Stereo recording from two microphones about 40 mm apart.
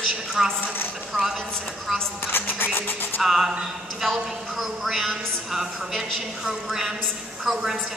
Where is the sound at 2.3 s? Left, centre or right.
Left.